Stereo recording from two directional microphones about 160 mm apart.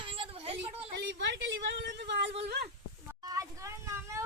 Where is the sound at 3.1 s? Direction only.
20° right (ahead or behind).